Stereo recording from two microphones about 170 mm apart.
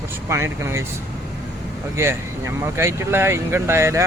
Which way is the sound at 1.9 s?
15° right (ahead or behind).